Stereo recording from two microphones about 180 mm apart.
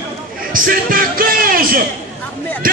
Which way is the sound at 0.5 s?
50° right (ahead or behind).